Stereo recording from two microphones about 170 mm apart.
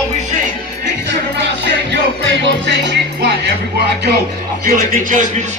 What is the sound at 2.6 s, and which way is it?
Music, 90° right.